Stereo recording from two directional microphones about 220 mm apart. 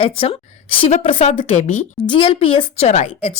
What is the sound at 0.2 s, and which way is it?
A woman's voice, 25° left (ahead or behind).